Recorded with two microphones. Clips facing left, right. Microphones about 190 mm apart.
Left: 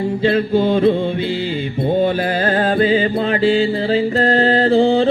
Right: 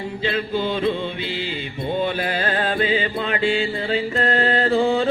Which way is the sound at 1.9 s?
45° left (ahead or behind).